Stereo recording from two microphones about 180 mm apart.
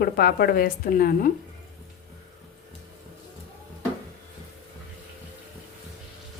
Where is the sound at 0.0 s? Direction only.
55° left (ahead or behind).